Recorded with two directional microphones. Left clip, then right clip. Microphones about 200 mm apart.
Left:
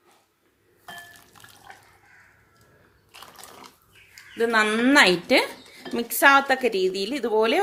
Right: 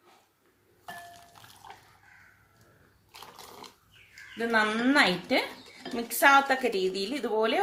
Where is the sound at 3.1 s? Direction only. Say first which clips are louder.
Left 2 dB; centre (ahead or behind).